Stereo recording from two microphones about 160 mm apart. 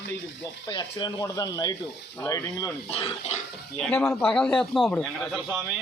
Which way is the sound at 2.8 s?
40° left (ahead or behind).